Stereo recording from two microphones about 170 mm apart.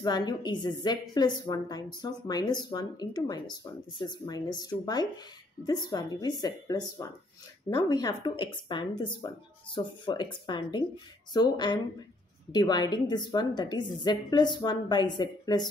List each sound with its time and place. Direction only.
0.0 s speech: 25° left (ahead or behind)